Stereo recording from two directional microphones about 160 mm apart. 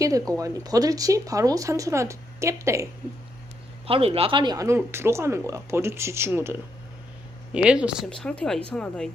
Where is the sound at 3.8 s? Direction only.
35° right (ahead or behind); by 8.1 s 5° right (ahead or behind).